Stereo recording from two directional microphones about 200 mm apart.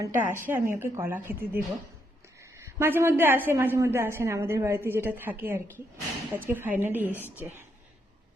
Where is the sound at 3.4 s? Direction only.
10° right (ahead or behind).